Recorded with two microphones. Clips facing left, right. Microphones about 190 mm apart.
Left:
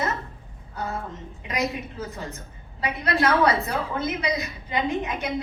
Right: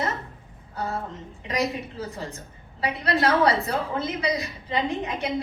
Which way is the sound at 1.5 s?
35° right (ahead or behind).